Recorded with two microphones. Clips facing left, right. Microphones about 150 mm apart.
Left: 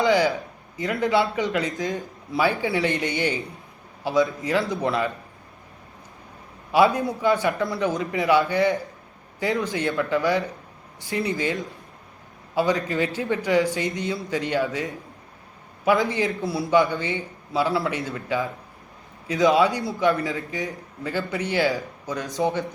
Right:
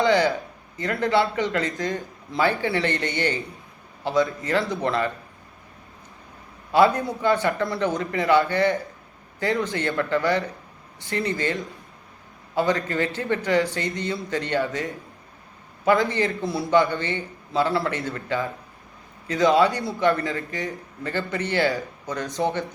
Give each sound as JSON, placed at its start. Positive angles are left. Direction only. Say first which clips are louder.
{"t": 0.0, "sound": "a sound", "louder": "even", "side_deg": 0}
{"t": 0.8, "sound": "a man's voice", "louder": "even", "side_deg": 0}
{"t": 4.0, "sound": "a man's voice", "louder": "left 1 dB", "side_deg": 0}
{"t": 6.7, "sound": "a man's voice", "louder": "even", "side_deg": 10}
{"t": 12.5, "sound": "a man's voice", "louder": "even", "side_deg": 10}
{"t": 13.7, "sound": "a man's voice", "louder": "left 1 dB", "side_deg": 20}
{"t": 14.1, "sound": "a man's voice", "louder": "even", "side_deg": 5}